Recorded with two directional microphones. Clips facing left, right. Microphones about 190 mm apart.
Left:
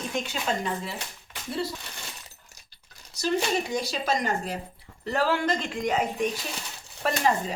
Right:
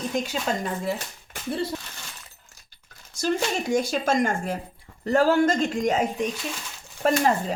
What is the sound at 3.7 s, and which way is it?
Speech, 50° right (ahead or behind).